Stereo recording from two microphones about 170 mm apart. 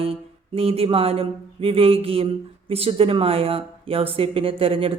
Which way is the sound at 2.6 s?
35° right (ahead or behind).